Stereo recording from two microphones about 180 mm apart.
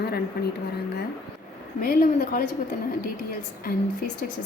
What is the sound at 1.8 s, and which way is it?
Speech, 55° left (ahead or behind).